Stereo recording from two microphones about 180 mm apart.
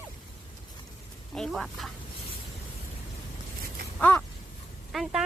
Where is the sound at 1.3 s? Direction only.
Centre (ahead or behind).